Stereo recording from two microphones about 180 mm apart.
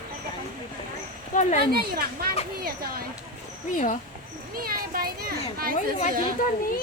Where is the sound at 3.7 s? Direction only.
45° left (ahead or behind).